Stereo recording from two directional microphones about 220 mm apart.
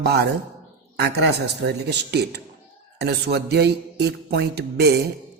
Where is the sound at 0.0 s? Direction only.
50° right (ahead or behind).